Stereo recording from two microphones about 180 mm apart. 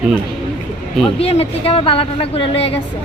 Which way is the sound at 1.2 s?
35° left (ahead or behind).